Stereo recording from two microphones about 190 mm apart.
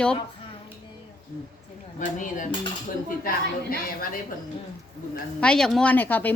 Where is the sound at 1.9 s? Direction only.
45° left (ahead or behind).